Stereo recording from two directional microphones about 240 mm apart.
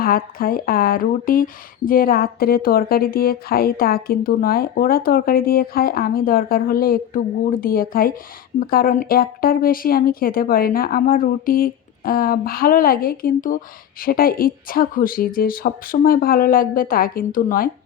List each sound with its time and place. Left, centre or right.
0.0 s speech: left